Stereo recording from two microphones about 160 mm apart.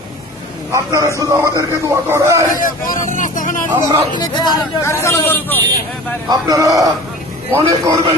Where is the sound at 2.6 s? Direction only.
55° left (ahead or behind).